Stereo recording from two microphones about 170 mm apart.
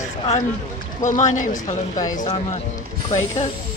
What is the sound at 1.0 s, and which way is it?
Speech, 45° left (ahead or behind).